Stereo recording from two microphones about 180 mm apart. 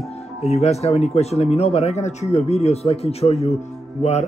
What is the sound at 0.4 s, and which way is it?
Speech, 35° left (ahead or behind).